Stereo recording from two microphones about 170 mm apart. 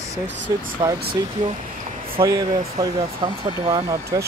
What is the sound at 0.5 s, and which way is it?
Speech, 20° right (ahead or behind).